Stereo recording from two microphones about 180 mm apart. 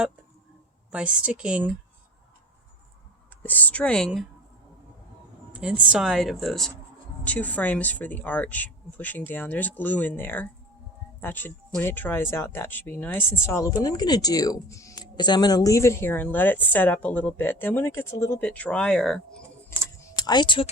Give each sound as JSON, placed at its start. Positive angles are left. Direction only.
{"t": 0.9, "sound": "a woman's voice", "side_deg": -5}
{"t": 3.4, "sound": "speech", "side_deg": 10}
{"t": 5.5, "sound": "a woman's voice", "side_deg": -5}
{"t": 20.1, "sound": "speech", "side_deg": 25}